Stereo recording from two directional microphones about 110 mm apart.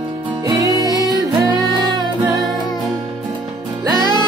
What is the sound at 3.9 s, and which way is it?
Music, 40° left (ahead or behind).